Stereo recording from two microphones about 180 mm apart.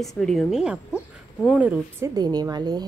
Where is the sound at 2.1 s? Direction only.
20° right (ahead or behind).